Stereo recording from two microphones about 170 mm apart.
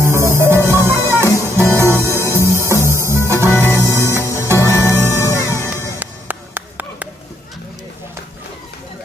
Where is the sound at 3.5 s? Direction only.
15° left (ahead or behind).